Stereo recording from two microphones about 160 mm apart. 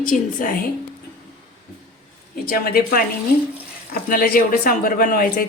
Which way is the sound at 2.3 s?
70° left (ahead or behind).